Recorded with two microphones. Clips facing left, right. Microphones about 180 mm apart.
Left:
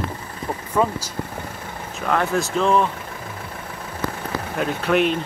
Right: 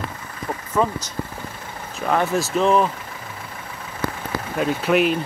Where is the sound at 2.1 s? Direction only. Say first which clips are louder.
Right 1 dB; centre (ahead or behind).